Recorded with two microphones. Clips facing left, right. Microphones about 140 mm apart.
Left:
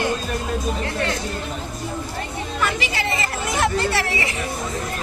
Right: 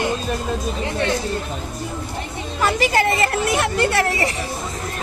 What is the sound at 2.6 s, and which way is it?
A woman's voice, 45° right (ahead or behind).